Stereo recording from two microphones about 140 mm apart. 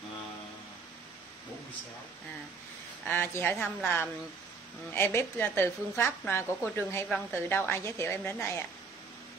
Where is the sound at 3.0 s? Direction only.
15° left (ahead or behind).